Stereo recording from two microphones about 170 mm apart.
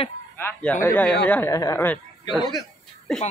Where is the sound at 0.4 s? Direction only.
10° left (ahead or behind).